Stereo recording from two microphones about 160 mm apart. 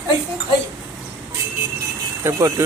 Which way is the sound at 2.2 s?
15° right (ahead or behind).